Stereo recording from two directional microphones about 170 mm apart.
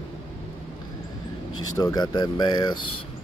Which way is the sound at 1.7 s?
20° left (ahead or behind).